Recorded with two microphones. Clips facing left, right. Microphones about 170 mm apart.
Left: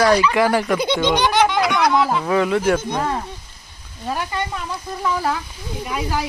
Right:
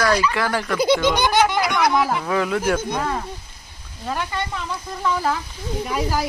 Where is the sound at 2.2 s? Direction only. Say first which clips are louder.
Left 3 dB; centre (ahead or behind).